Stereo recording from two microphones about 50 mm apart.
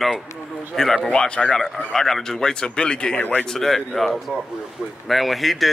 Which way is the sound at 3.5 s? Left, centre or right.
Centre.